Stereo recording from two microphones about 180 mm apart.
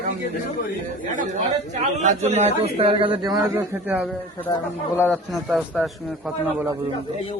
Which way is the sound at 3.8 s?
10° right (ahead or behind).